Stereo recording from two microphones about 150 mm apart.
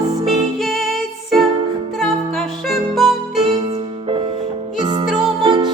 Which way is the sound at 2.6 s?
Centre (ahead or behind).